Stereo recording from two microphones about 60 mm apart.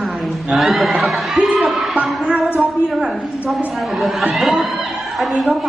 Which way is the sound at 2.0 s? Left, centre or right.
Centre.